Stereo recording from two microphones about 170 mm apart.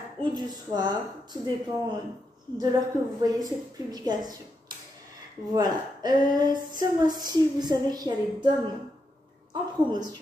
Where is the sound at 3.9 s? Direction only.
25° right (ahead or behind).